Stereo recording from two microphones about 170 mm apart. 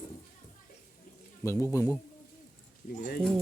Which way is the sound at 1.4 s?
20° left (ahead or behind).